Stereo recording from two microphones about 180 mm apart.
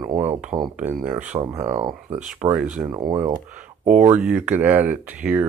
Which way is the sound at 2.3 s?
5° right (ahead or behind).